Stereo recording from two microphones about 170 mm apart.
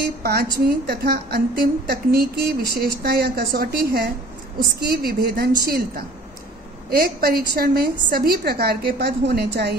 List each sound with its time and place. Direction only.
0.2 s a woman's voice: 65° right (ahead or behind)